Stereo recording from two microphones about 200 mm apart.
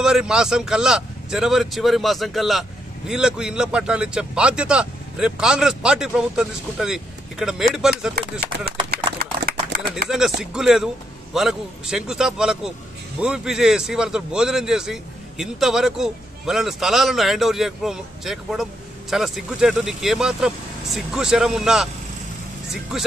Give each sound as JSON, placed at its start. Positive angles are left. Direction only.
{"t": 0.0, "sound": "a man's voice", "side_deg": -5}
{"t": 8.9, "sound": "a sound", "side_deg": -50}
{"t": 10.0, "sound": "a man's voice", "side_deg": 0}